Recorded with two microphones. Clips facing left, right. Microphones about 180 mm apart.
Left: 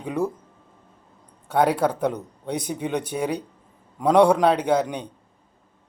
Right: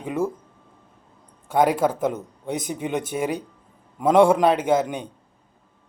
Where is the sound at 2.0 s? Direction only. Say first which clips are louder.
Even; 20° right (ahead or behind).